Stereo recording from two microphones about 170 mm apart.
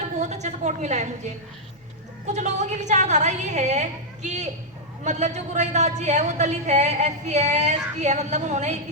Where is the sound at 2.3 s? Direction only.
45° right (ahead or behind).